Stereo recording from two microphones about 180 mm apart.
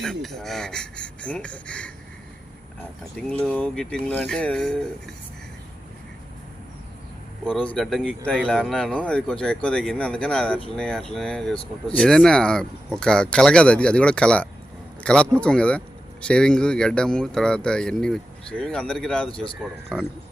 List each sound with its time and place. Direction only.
0.0 s speech: centre (ahead or behind)
3.2 s speech: 5° left (ahead or behind)
7.4 s speech: 5° left (ahead or behind)